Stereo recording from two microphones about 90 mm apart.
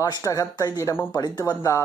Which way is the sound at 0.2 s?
40° left (ahead or behind).